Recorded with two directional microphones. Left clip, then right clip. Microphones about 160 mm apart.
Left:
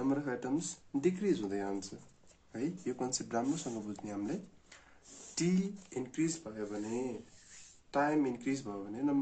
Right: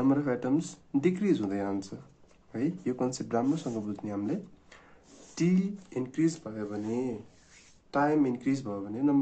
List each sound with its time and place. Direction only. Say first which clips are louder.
0.0 s speech: right 7 dB; 35° right (ahead or behind)